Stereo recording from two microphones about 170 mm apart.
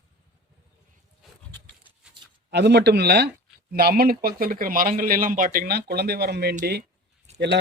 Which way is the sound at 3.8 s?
65° right (ahead or behind).